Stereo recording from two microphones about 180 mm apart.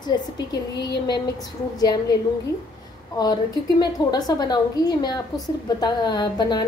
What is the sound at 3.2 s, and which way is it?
A woman's voice, 20° left (ahead or behind).